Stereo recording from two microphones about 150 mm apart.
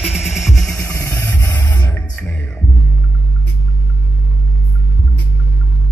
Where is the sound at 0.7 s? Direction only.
20° left (ahead or behind).